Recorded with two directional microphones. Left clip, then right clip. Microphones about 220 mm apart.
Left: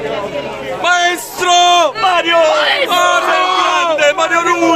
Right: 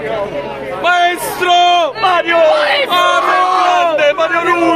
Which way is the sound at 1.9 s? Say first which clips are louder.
Even; 35° left (ahead or behind).